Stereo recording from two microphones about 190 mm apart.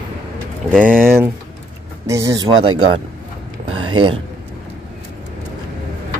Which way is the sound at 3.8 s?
25° right (ahead or behind).